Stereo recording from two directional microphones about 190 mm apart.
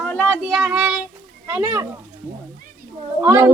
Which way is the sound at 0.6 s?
5° right (ahead or behind).